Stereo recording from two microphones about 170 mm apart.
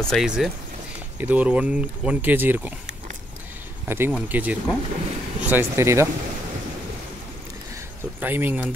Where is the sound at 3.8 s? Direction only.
15° right (ahead or behind).